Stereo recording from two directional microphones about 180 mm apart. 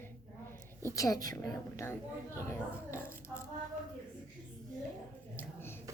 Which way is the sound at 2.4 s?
15° left (ahead or behind).